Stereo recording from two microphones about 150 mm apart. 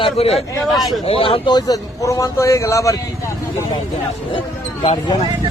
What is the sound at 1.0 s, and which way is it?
A man's voice, 40° left (ahead or behind).